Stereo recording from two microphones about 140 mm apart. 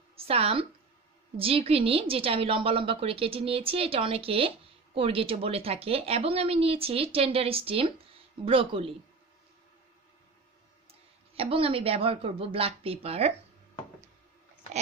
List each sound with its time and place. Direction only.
0.1 s a woman's voice: 45° right (ahead or behind)
10.9 s a woman's voice: 45° right (ahead or behind)